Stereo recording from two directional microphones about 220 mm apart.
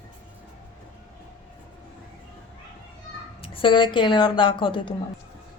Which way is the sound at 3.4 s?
25° left (ahead or behind).